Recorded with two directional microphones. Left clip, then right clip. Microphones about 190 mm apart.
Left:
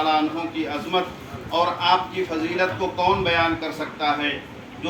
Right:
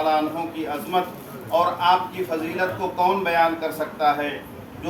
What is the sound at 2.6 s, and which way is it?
A man's voice, 35° right (ahead or behind).